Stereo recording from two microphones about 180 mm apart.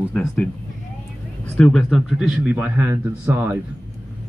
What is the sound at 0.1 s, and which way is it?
Speech, 5° left (ahead or behind).